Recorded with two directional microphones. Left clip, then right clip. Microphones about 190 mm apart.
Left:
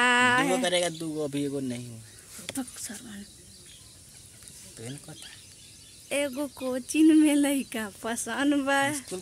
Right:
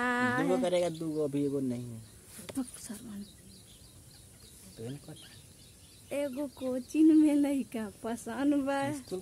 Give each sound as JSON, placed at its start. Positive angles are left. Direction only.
{"t": 0.0, "sound": "a sound", "side_deg": 10}
{"t": 0.7, "sound": "speech", "side_deg": -10}
{"t": 0.9, "sound": "speech", "side_deg": 0}
{"t": 2.5, "sound": "a sound", "side_deg": -5}
{"t": 2.8, "sound": "speech", "side_deg": 0}
{"t": 4.7, "sound": "speech", "side_deg": 0}
{"t": 6.0, "sound": "speech", "side_deg": 15}
{"t": 6.9, "sound": "speech", "side_deg": 10}